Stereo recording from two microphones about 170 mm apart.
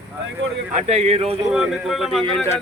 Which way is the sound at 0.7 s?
40° right (ahead or behind).